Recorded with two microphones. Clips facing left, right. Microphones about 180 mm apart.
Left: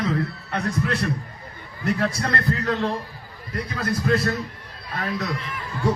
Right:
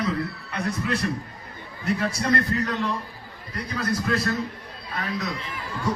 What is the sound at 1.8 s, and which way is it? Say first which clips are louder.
Speech: left 2 dB; 60° left (ahead or behind).